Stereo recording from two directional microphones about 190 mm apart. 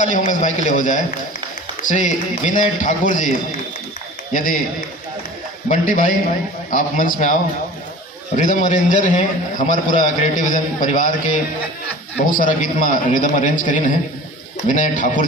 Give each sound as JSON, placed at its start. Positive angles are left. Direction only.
{"t": 0.0, "sound": "a man's voice", "side_deg": 40}
{"t": 5.7, "sound": "a man's voice", "side_deg": 45}
{"t": 8.4, "sound": "a man's voice", "side_deg": 40}